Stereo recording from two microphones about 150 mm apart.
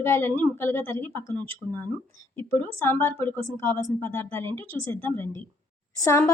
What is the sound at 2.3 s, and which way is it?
A woman's voice, 15° left (ahead or behind).